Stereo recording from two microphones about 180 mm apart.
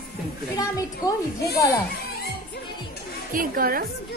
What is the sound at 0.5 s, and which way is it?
Speech, 20° left (ahead or behind).